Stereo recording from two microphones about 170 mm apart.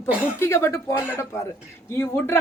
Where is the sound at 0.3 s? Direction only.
15° left (ahead or behind).